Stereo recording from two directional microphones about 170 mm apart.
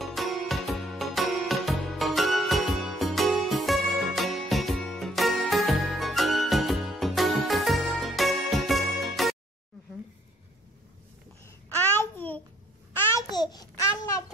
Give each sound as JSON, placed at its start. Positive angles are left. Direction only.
{"t": 0.0, "sound": "music", "side_deg": 0}
{"t": 11.4, "sound": "a sound", "side_deg": 15}
{"t": 12.9, "sound": "babbling", "side_deg": 15}
{"t": 13.3, "sound": "babbling", "side_deg": 25}